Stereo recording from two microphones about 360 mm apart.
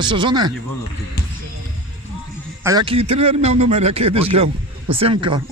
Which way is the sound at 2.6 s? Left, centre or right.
Centre.